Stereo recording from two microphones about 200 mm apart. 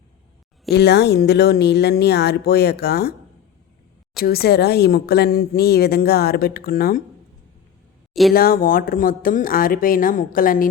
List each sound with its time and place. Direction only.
0.7 s speech: 55° left (ahead or behind)
4.2 s speech: 50° left (ahead or behind)
8.3 s speech: 45° left (ahead or behind)